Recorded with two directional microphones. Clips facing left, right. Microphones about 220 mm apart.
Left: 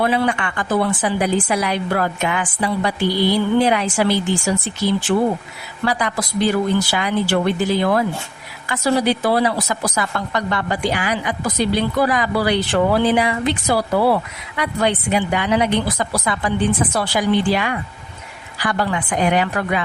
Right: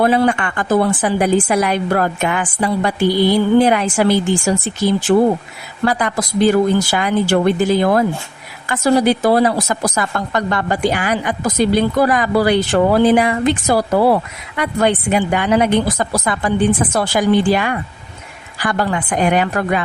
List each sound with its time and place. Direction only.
0.0 s speech: 45° right (ahead or behind)